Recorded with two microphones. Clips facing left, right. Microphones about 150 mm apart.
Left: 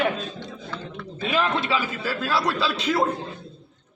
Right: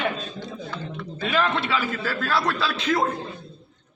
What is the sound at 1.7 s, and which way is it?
A man's voice, 10° left (ahead or behind).